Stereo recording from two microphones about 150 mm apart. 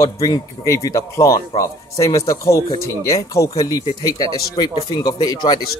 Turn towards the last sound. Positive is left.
turn(degrees=25)  # may be behind; listen again after turning